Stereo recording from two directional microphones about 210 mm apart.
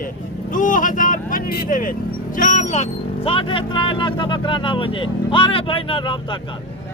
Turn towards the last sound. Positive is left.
turn(degrees=25)  # may be behind; listen again after turning